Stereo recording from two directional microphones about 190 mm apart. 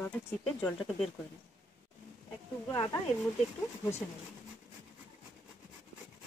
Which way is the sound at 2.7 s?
20° left (ahead or behind).